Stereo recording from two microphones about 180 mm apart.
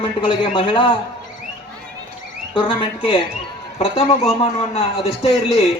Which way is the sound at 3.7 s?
35° left (ahead or behind).